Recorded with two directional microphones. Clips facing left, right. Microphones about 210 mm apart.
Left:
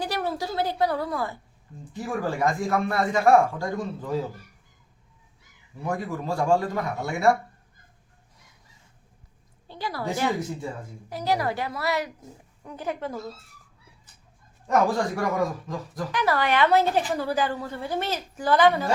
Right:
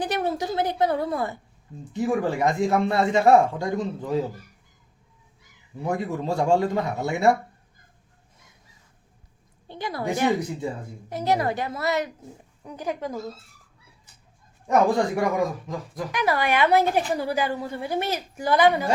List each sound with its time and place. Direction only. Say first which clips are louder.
0.0 s a sound: right 3 dB; 20° right (ahead or behind)
1.9 s speech: right 5 dB; 20° right (ahead or behind)
5.8 s speech: right 3 dB; 20° right (ahead or behind)
9.6 s speech: right 2 dB; 20° right (ahead or behind)
14.7 s speech: right 3 dB; 15° right (ahead or behind)